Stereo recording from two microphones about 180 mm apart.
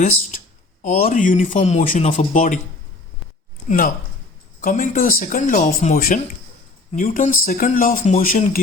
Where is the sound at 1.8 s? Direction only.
45° left (ahead or behind).